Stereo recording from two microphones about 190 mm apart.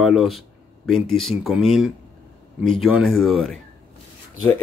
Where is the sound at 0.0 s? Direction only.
Centre (ahead or behind).